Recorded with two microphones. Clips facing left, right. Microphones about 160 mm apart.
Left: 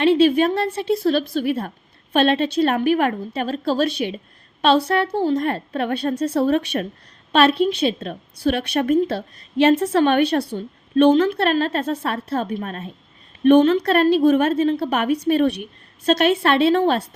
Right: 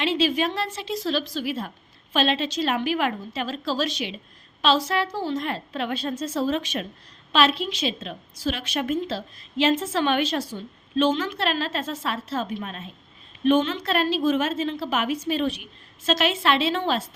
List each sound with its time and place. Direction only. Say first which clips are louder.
0.0 s a woman's voice: left 8 dB; 55° left (ahead or behind)
11.1 s a woman's voice: left 10 dB; 35° left (ahead or behind)
11.3 s a woman's voice: left 7 dB; 50° left (ahead or behind)
13.8 s a woman's voice: left 7 dB; 60° left (ahead or behind)